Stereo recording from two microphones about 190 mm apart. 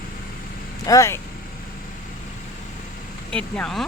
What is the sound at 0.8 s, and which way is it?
Speech, 15° left (ahead or behind).